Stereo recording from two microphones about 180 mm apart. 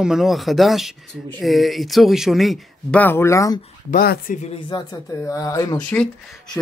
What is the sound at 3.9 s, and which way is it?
Speech, 55° left (ahead or behind).